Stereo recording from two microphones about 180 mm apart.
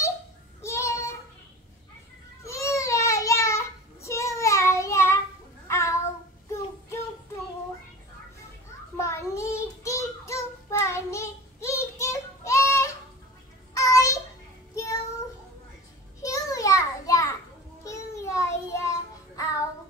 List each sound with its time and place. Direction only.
0.6 s child singing: 15° left (ahead or behind)
2.4 s child singing: 15° left (ahead or behind)
8.9 s child singing: 15° left (ahead or behind)
13.7 s a sound: 15° left (ahead or behind)
14.8 s child singing: 20° left (ahead or behind)
16.2 s a sound: 20° left (ahead or behind)
17.8 s child singing: 15° left (ahead or behind)